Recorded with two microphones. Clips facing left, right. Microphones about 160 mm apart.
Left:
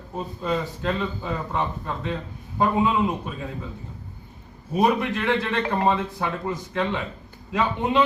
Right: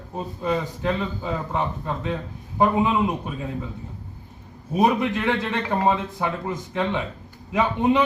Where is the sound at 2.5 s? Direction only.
20° right (ahead or behind).